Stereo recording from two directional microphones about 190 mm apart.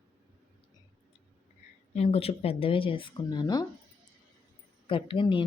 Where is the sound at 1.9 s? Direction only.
30° left (ahead or behind).